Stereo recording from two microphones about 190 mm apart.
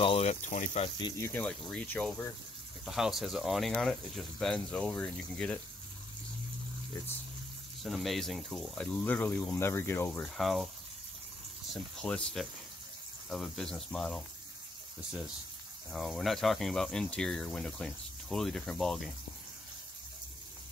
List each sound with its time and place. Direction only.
0.0 s speech: 30° left (ahead or behind)
0.9 s speech: 20° left (ahead or behind)
2.8 s speech: centre (ahead or behind)
7.8 s speech: centre (ahead or behind)
11.7 s speech: 5° left (ahead or behind)
15.9 s speech: centre (ahead or behind)